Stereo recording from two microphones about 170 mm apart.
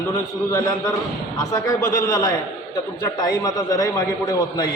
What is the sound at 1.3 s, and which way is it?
A man's voice, 15° left (ahead or behind).